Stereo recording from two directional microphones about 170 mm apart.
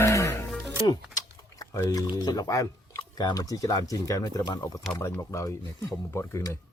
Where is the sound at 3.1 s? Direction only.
20° left (ahead or behind).